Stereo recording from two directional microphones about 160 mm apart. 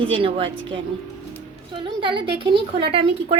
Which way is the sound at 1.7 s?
30° right (ahead or behind).